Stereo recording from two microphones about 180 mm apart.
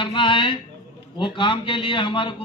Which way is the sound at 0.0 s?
25° left (ahead or behind).